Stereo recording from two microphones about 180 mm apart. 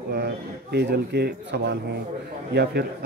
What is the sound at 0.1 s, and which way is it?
Speech, 65° right (ahead or behind).